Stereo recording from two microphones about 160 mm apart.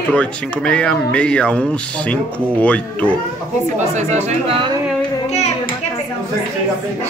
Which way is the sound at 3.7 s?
45° right (ahead or behind).